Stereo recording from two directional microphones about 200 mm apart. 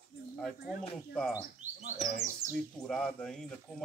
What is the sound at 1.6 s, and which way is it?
Speech, 35° right (ahead or behind).